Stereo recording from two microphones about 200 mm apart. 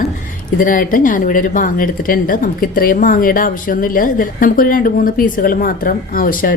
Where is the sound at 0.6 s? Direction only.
45° left (ahead or behind).